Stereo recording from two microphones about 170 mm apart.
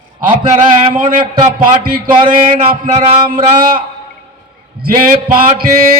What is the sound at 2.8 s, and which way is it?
Speech, 55° right (ahead or behind).